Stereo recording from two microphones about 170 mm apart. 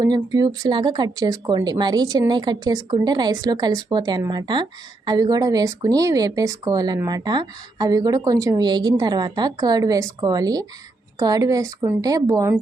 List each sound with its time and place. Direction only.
0.0 s speech: 25° right (ahead or behind)